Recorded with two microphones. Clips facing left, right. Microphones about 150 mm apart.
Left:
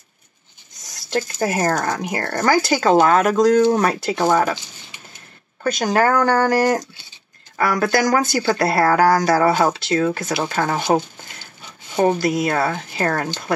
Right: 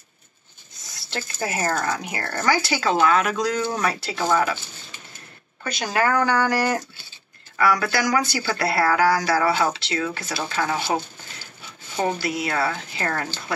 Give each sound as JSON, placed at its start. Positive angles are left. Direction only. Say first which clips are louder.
{"t": 1.1, "sound": "speech", "louder": "left 7 dB", "side_deg": 45}
{"t": 5.6, "sound": "speech", "louder": "left 6 dB", "side_deg": 50}
{"t": 12.0, "sound": "speech", "louder": "left 7 dB", "side_deg": 45}